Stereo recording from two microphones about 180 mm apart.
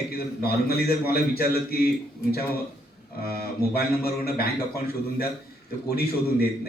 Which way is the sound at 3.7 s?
60° left (ahead or behind).